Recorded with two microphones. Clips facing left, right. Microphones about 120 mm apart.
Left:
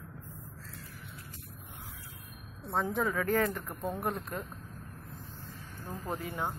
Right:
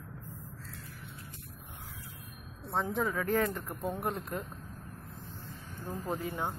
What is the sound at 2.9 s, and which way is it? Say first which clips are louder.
Speech: even; 20° right (ahead or behind).